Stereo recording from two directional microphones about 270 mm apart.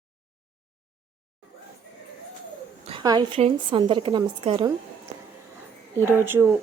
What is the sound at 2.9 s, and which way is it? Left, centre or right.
Speech, centre.